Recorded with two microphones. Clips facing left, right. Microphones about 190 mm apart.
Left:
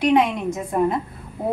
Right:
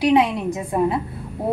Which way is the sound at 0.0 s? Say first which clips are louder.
Right 1 dB; 10° right (ahead or behind).